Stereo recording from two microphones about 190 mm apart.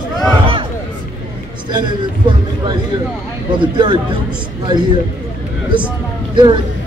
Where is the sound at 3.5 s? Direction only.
25° right (ahead or behind).